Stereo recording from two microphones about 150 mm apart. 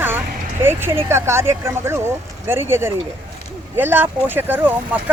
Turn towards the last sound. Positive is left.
turn(degrees=-15)  # may be behind; listen again after turning